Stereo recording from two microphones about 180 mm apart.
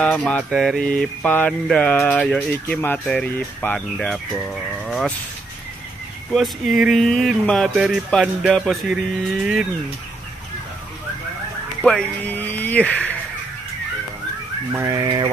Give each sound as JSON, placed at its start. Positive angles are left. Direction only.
{"t": 0.0, "sound": "mantra", "side_deg": 5}
{"t": 2.8, "sound": "speech", "side_deg": 5}
{"t": 4.8, "sound": "a sound", "side_deg": 0}
{"t": 6.3, "sound": "speech", "side_deg": 0}
{"t": 11.8, "sound": "speech", "side_deg": 5}
{"t": 14.7, "sound": "speech", "side_deg": -20}